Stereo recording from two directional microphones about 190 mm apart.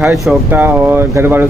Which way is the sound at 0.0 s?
15° right (ahead or behind).